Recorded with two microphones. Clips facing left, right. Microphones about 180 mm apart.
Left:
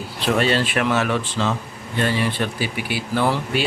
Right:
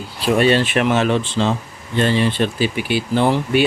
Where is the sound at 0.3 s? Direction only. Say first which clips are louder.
Right 5 dB; 20° right (ahead or behind).